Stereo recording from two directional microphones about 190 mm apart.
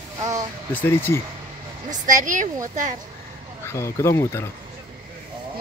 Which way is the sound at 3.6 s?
15° left (ahead or behind).